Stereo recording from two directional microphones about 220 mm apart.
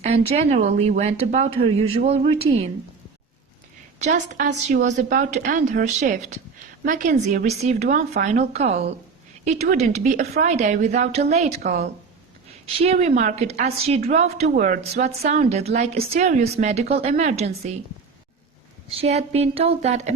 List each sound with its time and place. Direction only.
0.0 s speech: 30° right (ahead or behind)
4.0 s a woman's voice: 35° right (ahead or behind)
18.9 s speech: 30° right (ahead or behind)